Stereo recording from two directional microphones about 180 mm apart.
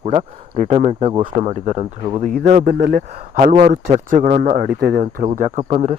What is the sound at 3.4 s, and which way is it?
Speech, 45° right (ahead or behind).